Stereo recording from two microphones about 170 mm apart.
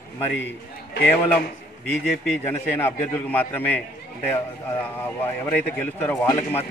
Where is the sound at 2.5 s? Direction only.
10° left (ahead or behind).